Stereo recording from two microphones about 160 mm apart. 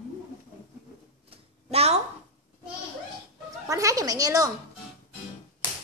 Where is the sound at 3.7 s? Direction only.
20° right (ahead or behind).